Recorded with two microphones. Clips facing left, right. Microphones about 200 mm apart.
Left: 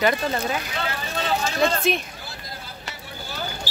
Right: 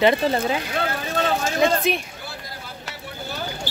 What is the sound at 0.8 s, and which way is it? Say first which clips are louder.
Speech: right 4 dB; 50° right (ahead or behind).